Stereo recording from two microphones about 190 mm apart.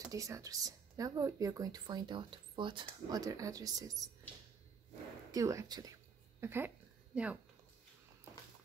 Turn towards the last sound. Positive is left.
turn(degrees=-5)  # may be behind; listen again after turning